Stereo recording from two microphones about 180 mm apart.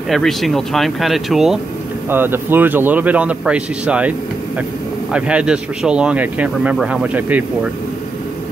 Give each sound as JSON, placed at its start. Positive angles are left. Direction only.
{"t": 0.1, "sound": "speech", "side_deg": 0}
{"t": 5.1, "sound": "speech", "side_deg": -5}